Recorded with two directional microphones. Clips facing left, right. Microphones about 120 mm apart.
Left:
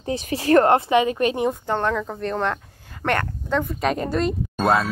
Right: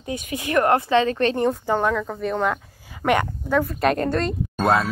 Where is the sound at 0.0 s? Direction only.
35° left (ahead or behind); by 1.5 s 10° left (ahead or behind).